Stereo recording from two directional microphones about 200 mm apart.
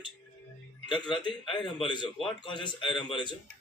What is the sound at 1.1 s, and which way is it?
A man's voice, 25° left (ahead or behind).